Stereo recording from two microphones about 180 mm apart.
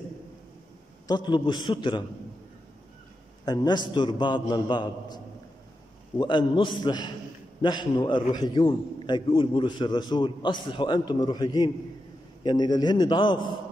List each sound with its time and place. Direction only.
1.0 s a man's voice: 25° left (ahead or behind)
3.4 s a man's voice: 25° left (ahead or behind)